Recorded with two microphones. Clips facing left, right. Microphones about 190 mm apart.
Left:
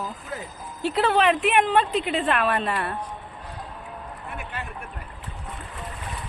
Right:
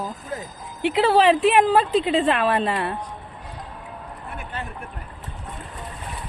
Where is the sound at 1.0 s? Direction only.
30° right (ahead or behind).